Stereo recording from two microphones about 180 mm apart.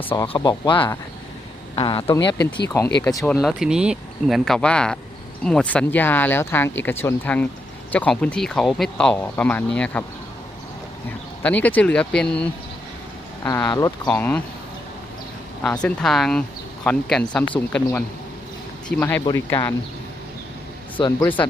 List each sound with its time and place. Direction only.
0.0 s speech: 10° left (ahead or behind)
0.3 s speech: 20° left (ahead or behind)
2.0 s speech: 20° left (ahead or behind)
3.2 s speech: centre (ahead or behind)
11.4 s speech: 10° left (ahead or behind)
13.4 s speech: 15° left (ahead or behind)
14.1 s speech: 10° left (ahead or behind)
15.6 s speech: 5° left (ahead or behind)
18.9 s speech: 10° left (ahead or behind)